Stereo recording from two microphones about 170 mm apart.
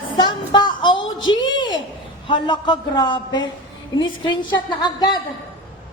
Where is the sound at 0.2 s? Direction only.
25° left (ahead or behind).